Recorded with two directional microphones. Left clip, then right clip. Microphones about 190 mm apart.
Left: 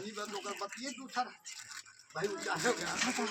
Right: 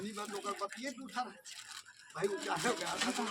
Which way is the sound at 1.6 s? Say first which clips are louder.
Even; 35° right (ahead or behind).